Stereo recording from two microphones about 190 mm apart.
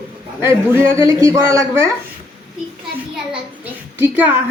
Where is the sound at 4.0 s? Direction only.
10° right (ahead or behind).